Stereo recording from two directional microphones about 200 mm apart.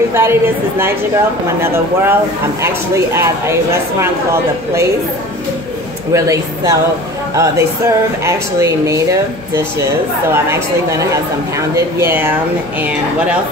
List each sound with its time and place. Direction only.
0.1 s speech: 10° right (ahead or behind)
6.1 s speech: 15° right (ahead or behind)